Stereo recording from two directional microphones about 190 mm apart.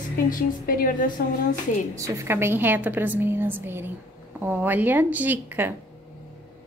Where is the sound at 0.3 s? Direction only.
45° left (ahead or behind).